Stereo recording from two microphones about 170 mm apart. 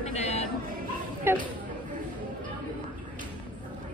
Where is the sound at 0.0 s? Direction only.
35° left (ahead or behind).